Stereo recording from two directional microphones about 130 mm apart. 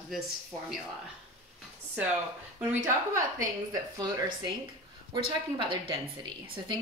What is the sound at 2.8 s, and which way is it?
A woman's voice, 25° right (ahead or behind).